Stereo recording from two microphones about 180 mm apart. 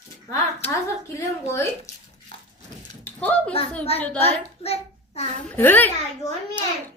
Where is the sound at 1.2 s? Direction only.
15° left (ahead or behind).